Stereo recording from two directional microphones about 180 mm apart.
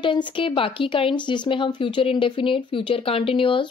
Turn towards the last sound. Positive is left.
turn(degrees=30)  # may be behind; listen again after turning